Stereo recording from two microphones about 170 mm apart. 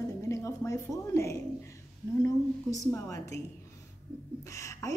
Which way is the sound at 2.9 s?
15° left (ahead or behind).